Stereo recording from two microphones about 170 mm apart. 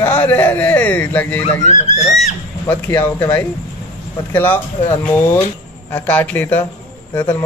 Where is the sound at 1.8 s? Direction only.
45° left (ahead or behind).